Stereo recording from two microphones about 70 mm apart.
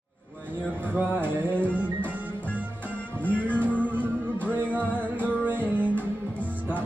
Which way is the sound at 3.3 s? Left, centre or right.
Left.